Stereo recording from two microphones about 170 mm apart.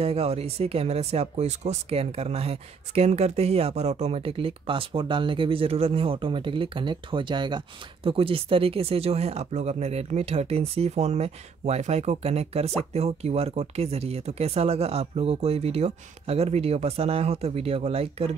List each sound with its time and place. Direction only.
0.0 s speech: 35° right (ahead or behind)